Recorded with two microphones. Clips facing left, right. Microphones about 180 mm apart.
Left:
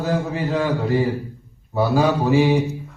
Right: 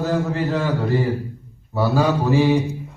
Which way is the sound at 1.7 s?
15° left (ahead or behind).